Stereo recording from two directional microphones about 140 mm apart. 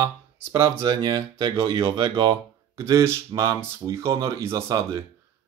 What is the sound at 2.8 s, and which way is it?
Speech, 20° right (ahead or behind).